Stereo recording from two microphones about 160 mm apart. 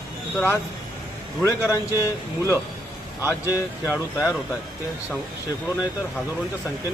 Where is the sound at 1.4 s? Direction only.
20° left (ahead or behind).